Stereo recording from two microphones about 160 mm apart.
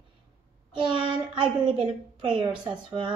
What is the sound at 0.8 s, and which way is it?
A woman's voice, 30° right (ahead or behind).